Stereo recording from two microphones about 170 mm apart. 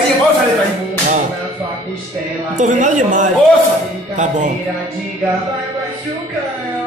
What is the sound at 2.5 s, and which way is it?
Speech, 50° right (ahead or behind).